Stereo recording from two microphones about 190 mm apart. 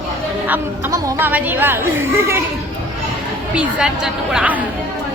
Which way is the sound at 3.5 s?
5° right (ahead or behind).